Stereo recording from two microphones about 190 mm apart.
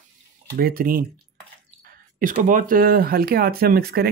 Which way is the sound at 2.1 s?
45° right (ahead or behind).